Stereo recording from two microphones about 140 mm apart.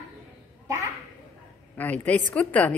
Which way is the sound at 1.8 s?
10° left (ahead or behind).